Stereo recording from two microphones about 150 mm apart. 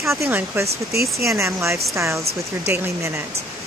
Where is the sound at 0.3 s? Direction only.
15° right (ahead or behind).